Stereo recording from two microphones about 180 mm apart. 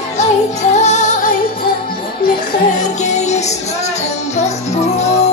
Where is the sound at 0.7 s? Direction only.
40° left (ahead or behind).